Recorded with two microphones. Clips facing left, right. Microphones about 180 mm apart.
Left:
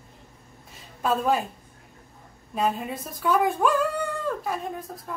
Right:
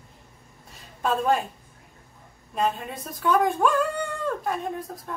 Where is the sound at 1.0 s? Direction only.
Centre (ahead or behind).